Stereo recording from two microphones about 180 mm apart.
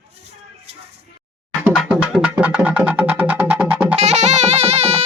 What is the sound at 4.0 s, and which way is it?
Music, 40° right (ahead or behind).